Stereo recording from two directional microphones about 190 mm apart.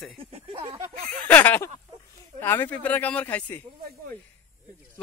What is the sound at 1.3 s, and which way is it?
Speech, 10° left (ahead or behind).